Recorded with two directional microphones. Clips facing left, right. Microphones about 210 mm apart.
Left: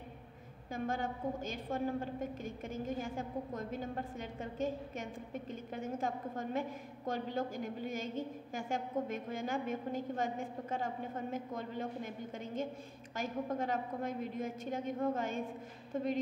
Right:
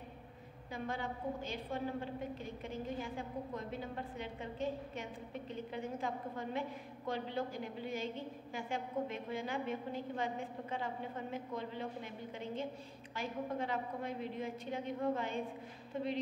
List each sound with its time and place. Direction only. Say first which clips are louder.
0.7 s a woman's voice: left 4 dB; 45° left (ahead or behind)